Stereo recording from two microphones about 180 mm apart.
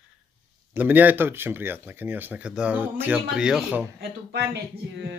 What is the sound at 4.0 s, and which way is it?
Speech, 65° right (ahead or behind).